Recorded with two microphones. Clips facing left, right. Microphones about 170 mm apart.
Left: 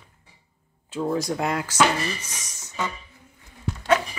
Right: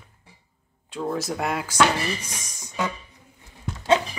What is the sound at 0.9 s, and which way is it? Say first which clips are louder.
Speech: left 2 dB; centre (ahead or behind).